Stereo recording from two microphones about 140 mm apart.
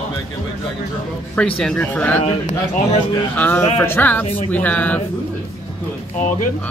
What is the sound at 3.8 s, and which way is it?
Speech, 15° left (ahead or behind).